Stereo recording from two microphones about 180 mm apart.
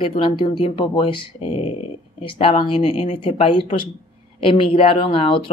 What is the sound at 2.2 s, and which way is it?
Speech, 30° left (ahead or behind).